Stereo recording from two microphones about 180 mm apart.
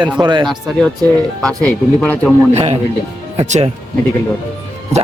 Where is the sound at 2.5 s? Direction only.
35° right (ahead or behind).